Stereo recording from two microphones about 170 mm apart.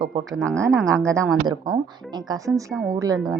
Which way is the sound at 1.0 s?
15° right (ahead or behind).